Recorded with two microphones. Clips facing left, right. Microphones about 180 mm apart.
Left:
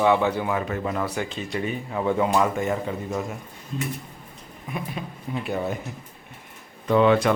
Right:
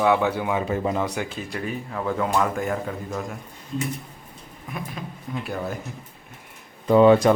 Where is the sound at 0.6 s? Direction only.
25° right (ahead or behind).